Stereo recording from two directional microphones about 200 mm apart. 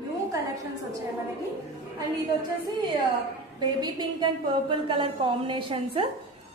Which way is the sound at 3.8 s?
20° right (ahead or behind).